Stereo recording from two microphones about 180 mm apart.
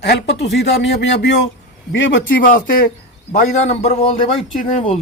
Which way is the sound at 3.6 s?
35° left (ahead or behind).